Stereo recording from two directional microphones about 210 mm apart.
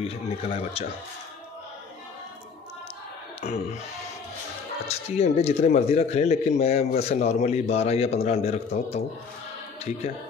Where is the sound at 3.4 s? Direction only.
30° left (ahead or behind).